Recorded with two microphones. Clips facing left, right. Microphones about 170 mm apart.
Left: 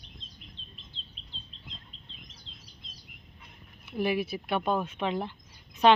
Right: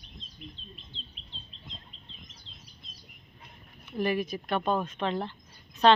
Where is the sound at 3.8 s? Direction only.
10° left (ahead or behind).